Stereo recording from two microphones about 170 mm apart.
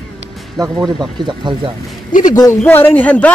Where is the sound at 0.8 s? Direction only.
25° right (ahead or behind).